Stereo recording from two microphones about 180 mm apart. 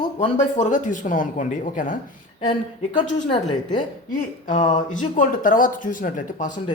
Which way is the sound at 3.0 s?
30° left (ahead or behind).